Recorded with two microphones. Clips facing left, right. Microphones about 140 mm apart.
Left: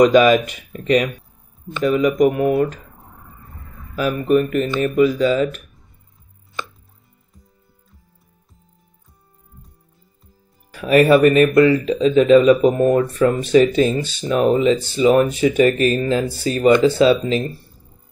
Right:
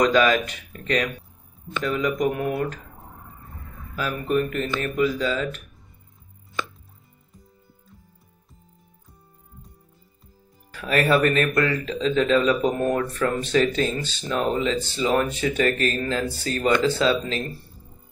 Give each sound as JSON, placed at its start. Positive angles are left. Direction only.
{"t": 0.0, "sound": "speech", "side_deg": 15}
{"t": 3.9, "sound": "speech", "side_deg": 20}
{"t": 10.7, "sound": "speech", "side_deg": 15}